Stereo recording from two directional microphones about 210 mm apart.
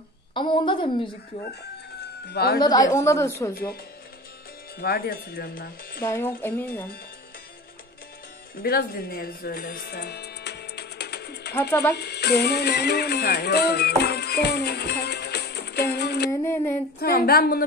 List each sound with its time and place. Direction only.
0.3 s a woman's voice: 20° left (ahead or behind)
2.2 s speech: 50° left (ahead or behind)
2.6 s a woman's voice: 20° left (ahead or behind)
4.7 s speech: 45° left (ahead or behind)
6.0 s a woman's voice: 10° left (ahead or behind)
8.6 s music: 45° left (ahead or behind)
11.9 s speech: 50° left (ahead or behind)
16.3 s a woman's voice: 10° left (ahead or behind)
17.0 s speech: 45° left (ahead or behind)